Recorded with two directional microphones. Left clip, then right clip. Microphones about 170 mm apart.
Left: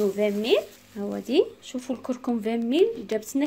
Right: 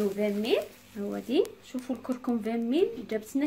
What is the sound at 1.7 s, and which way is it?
Speech, 50° left (ahead or behind).